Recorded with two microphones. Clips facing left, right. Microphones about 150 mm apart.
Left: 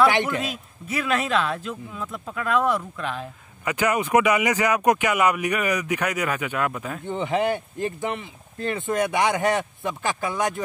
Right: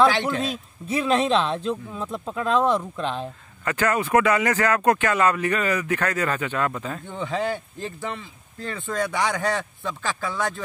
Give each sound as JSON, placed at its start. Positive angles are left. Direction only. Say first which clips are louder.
{"t": 0.4, "sound": "speech", "louder": "right 2 dB", "side_deg": -30}
{"t": 3.6, "sound": "speech", "louder": "even", "side_deg": 15}
{"t": 7.1, "sound": "speech", "louder": "left 4 dB", "side_deg": 20}